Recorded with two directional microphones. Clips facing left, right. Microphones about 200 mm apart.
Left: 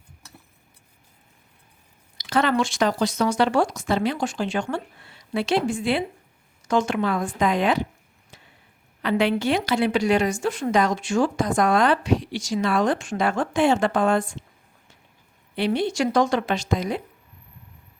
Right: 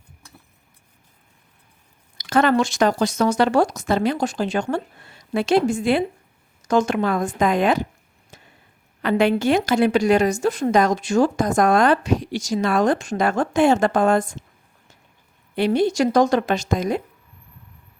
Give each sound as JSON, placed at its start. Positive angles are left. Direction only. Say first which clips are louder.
{"t": 2.1, "sound": "a woman's voice", "louder": "right 4 dB", "side_deg": -45}
{"t": 8.3, "sound": "a sound", "louder": "right 3 dB", "side_deg": -45}
{"t": 9.0, "sound": "a woman's voice", "louder": "right 3 dB", "side_deg": -45}
{"t": 15.5, "sound": "a woman's voice", "louder": "right 4 dB", "side_deg": -45}